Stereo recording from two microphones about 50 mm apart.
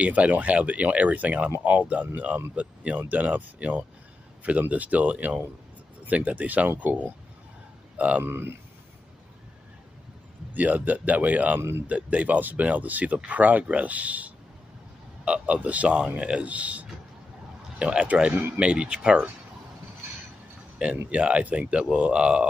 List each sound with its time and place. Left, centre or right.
0.0 s speech: right
8.3 s a man's voice: right
10.5 s speech: right
20.8 s speech: right